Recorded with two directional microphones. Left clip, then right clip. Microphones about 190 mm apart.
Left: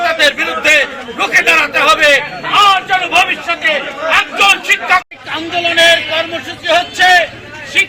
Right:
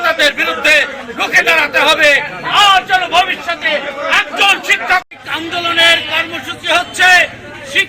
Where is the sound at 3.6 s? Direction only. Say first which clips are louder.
Left 1 dB; centre (ahead or behind).